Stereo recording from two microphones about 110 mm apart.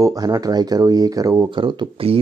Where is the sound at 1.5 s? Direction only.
45° right (ahead or behind).